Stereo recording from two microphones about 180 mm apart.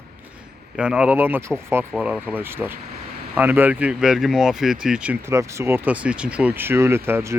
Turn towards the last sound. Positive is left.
turn(degrees=-15)  # may be behind; listen again after turning